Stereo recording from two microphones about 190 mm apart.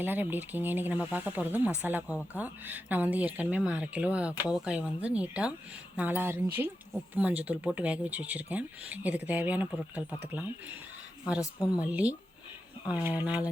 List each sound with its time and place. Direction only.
0.0 s speech: 10° right (ahead or behind)
11.3 s a woman's voice: 20° left (ahead or behind)
11.8 s speech: 5° right (ahead or behind)